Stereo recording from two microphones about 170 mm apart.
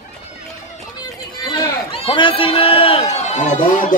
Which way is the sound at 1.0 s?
25° left (ahead or behind).